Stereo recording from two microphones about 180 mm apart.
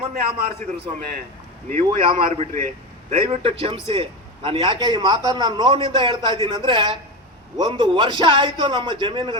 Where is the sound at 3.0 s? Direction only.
30° right (ahead or behind).